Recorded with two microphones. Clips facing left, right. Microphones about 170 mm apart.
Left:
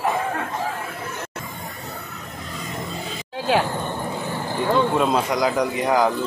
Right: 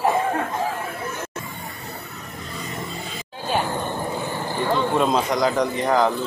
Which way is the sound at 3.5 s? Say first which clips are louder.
Left 4 dB; 90° left.